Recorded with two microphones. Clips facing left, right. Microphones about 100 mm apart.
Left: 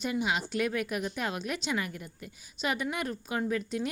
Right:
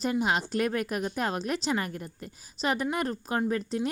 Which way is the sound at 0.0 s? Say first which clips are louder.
Right 3 dB; 40° right (ahead or behind).